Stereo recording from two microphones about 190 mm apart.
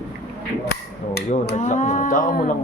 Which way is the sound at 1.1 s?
55° left (ahead or behind).